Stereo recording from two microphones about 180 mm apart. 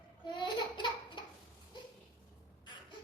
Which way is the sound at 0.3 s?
25° left (ahead or behind).